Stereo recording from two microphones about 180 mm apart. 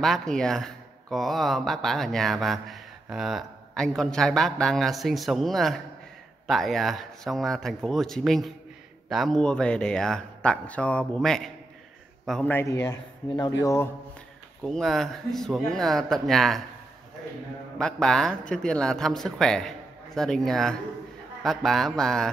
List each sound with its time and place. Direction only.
0.0 s a man's voice: centre (ahead or behind)
12.8 s a man's voice: 20° left (ahead or behind)
14.6 s speech: centre (ahead or behind)
17.7 s speech: 5° left (ahead or behind)